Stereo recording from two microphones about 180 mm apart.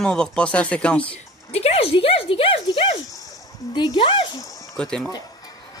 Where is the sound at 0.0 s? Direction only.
5° left (ahead or behind).